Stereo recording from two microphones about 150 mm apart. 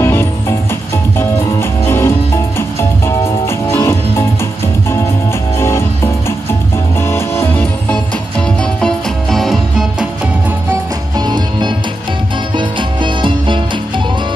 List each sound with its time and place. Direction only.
0.0 s music: 15° left (ahead or behind)
3.3 s music: 15° left (ahead or behind)
5.6 s music: 15° left (ahead or behind)
8.8 s music: centre (ahead or behind)
11.1 s music: 30° right (ahead or behind)